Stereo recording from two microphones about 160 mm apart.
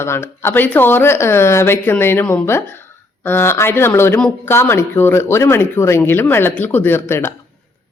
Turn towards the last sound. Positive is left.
turn(degrees=15)  # may be behind; listen again after turning